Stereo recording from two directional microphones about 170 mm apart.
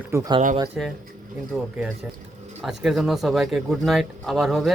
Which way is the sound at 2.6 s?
Centre (ahead or behind).